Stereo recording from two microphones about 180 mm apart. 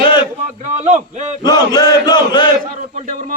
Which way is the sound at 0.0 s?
25° left (ahead or behind).